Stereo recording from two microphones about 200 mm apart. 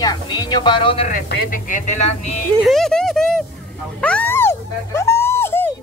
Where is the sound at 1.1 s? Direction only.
40° left (ahead or behind).